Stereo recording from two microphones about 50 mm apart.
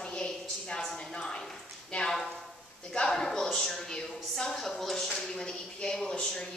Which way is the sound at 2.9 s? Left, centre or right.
Centre.